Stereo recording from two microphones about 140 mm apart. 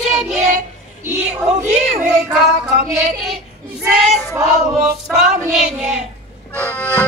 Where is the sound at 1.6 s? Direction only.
55° right (ahead or behind).